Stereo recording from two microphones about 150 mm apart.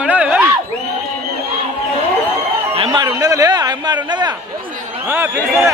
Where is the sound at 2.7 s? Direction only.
35° right (ahead or behind).